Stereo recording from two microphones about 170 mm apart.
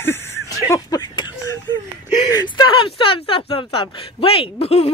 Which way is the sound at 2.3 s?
25° left (ahead or behind).